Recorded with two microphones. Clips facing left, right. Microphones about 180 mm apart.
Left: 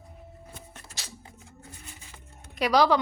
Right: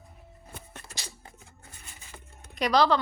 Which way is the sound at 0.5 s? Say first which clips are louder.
Right 1 dB; 65° right (ahead or behind).